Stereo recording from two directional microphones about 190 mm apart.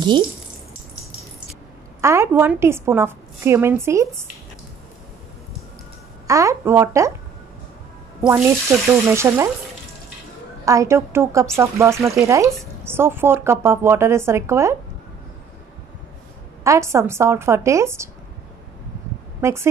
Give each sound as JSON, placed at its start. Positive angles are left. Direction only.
{"t": 2.0, "sound": "a woman's voice", "side_deg": -15}
{"t": 6.2, "sound": "a woman's voice", "side_deg": -15}
{"t": 8.3, "sound": "a woman's voice", "side_deg": -15}
{"t": 10.6, "sound": "a woman's voice", "side_deg": -15}
{"t": 16.6, "sound": "a woman's voice", "side_deg": -15}
{"t": 19.4, "sound": "a woman's voice", "side_deg": -15}